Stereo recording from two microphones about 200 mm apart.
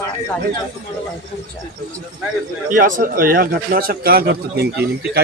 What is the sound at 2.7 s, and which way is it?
A man's voice, 40° right (ahead or behind).